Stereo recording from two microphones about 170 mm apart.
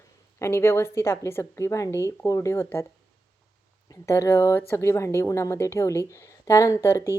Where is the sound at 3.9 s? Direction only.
20° left (ahead or behind).